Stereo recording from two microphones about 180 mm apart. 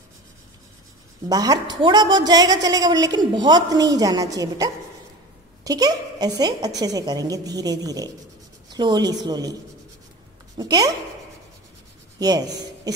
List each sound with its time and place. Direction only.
1.3 s a woman's voice: 20° right (ahead or behind)
10.6 s a woman's voice: 20° right (ahead or behind)
12.2 s speech: 20° right (ahead or behind)